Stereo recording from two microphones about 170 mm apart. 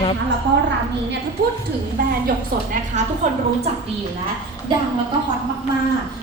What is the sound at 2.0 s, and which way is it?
Speech, 60° right (ahead or behind).